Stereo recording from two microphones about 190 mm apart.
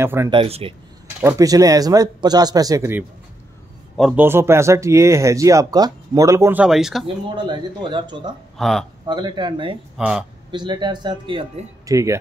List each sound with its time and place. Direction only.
0.0 s speech: 10° right (ahead or behind)
0.3 s speech: 30° right (ahead or behind)
1.2 s speech: 20° right (ahead or behind)
3.9 s a man's voice: centre (ahead or behind)
4.2 s speech: 15° right (ahead or behind)
7.3 s speech: 25° right (ahead or behind)
8.5 s speech: centre (ahead or behind)
9.0 s speech: 25° right (ahead or behind)
9.9 s speech: 5° right (ahead or behind)
10.5 s speech: 25° right (ahead or behind)